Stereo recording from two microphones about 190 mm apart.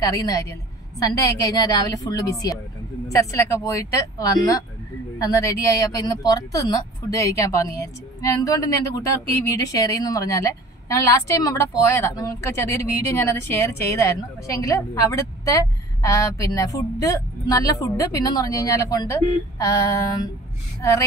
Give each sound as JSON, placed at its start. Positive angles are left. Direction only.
{"t": 0.0, "sound": "a woman's voice", "side_deg": 20}